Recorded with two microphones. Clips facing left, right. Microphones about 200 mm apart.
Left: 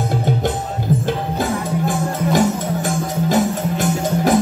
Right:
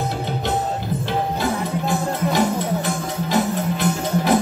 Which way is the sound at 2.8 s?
45° left (ahead or behind).